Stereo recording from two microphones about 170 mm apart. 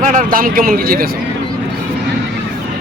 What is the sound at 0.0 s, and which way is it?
Speech, 50° right (ahead or behind).